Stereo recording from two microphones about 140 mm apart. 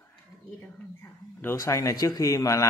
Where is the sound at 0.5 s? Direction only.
15° left (ahead or behind).